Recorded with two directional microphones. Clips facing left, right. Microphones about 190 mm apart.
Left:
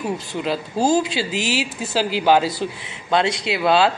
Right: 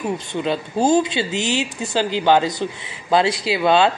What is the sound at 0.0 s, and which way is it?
Speech, centre (ahead or behind).